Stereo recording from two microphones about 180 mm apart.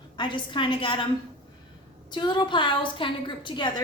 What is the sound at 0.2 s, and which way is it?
Speech, 25° left (ahead or behind).